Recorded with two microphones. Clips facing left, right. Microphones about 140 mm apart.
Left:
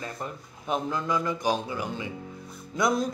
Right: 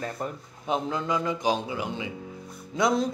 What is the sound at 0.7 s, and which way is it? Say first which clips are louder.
Music: even; 20° right (ahead or behind).